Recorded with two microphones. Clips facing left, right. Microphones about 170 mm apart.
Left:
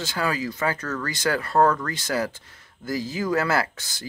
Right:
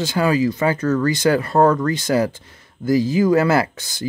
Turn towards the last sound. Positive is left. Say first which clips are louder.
# right 6 dB
turn(degrees=-15)  # may be behind; listen again after turning